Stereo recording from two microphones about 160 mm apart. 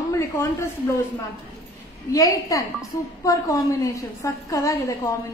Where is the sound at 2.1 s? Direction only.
20° left (ahead or behind).